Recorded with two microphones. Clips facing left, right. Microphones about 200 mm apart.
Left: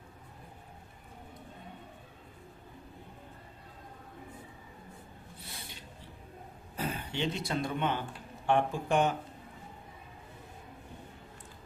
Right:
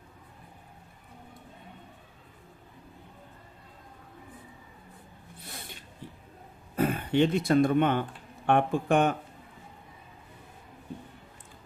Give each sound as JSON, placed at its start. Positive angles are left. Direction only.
{"t": 6.7, "sound": "speech", "side_deg": -55}